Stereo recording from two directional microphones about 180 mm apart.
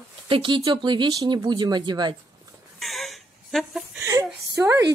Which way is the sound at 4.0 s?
15° right (ahead or behind).